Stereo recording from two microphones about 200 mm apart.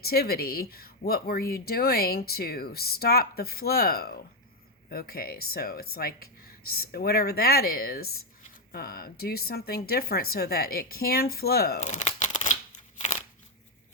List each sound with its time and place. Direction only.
0.0 s speech: 50° left (ahead or behind)
11.8 s crumpling: 35° left (ahead or behind)
13.0 s a sound: 35° left (ahead or behind)